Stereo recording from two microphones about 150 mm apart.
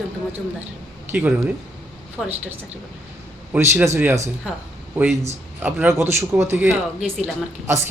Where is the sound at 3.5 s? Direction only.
15° right (ahead or behind).